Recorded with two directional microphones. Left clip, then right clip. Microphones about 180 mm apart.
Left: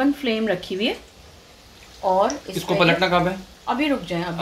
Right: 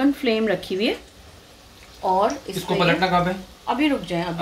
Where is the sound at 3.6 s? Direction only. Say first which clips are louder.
Even; centre (ahead or behind).